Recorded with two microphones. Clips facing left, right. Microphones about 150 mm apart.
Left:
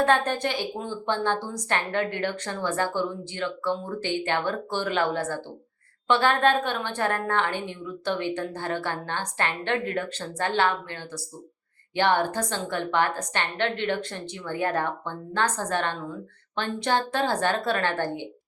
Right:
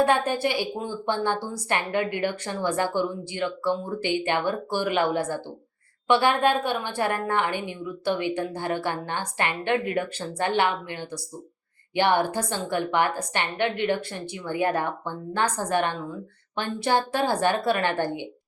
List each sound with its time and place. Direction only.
0.0 s a woman's voice: 10° right (ahead or behind)